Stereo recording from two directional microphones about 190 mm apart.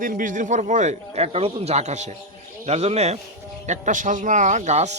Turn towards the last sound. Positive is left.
turn(degrees=-35)  # may be behind; listen again after turning